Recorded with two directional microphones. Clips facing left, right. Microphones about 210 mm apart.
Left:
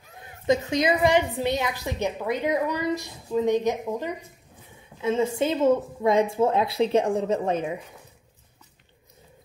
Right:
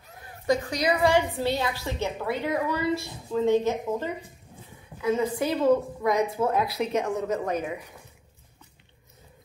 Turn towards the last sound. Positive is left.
turn(degrees=25)  # may be behind; listen again after turning